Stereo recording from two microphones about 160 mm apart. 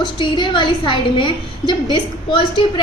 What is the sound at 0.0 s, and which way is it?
A woman's voice, 30° left (ahead or behind).